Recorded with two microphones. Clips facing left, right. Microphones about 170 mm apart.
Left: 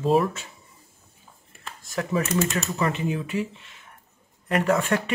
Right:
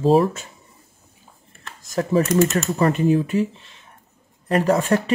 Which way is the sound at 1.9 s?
35° right (ahead or behind).